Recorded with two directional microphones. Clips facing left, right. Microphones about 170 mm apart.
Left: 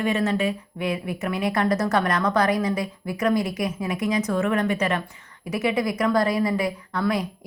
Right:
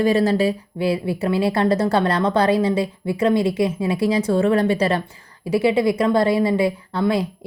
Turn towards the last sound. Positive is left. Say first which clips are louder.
# right 4 dB
turn(degrees=-30)  # may be behind; listen again after turning